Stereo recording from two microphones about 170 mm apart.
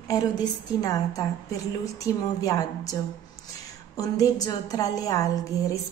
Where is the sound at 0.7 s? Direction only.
20° left (ahead or behind).